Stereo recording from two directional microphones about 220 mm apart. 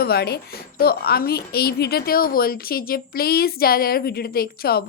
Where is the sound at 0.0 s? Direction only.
45° left (ahead or behind).